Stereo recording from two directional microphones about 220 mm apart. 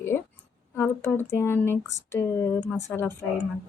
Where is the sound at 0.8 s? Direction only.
10° left (ahead or behind).